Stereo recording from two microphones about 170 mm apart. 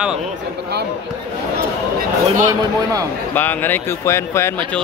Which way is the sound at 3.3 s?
10° left (ahead or behind).